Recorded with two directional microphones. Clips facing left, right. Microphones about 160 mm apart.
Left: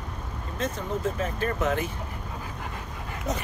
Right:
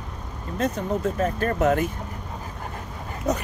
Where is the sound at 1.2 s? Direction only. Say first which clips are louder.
Right 5 dB; 45° right (ahead or behind).